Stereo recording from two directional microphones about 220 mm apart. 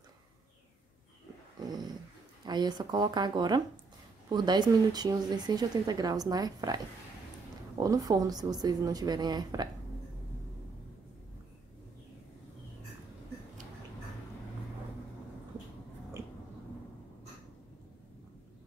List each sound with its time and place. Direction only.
2.4 s speech: 20° right (ahead or behind)